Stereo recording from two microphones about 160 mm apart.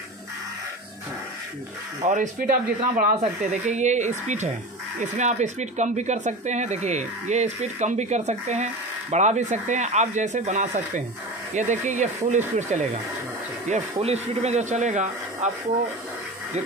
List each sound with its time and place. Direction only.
2.0 s speech: 50° right (ahead or behind)
3.6 s speech: 45° right (ahead or behind)